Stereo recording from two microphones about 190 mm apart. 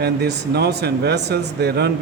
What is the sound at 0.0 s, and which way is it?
Speech, 60° right (ahead or behind).